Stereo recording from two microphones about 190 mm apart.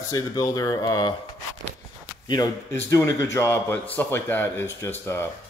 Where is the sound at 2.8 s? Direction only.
15° left (ahead or behind).